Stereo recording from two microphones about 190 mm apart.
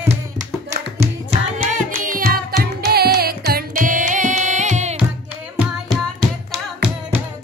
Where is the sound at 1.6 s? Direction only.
45° right (ahead or behind).